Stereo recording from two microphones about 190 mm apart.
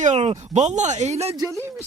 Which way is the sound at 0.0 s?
35° right (ahead or behind).